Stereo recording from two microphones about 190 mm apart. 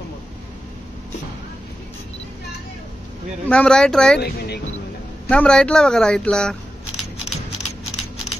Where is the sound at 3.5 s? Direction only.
5° left (ahead or behind).